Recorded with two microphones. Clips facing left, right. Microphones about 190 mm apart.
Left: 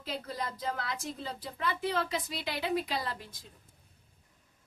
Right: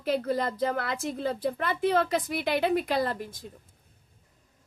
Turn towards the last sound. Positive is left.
turn(degrees=-50)  # may be behind; listen again after turning